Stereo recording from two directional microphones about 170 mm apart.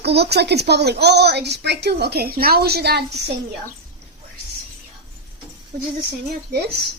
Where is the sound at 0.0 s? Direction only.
75° right (ahead or behind).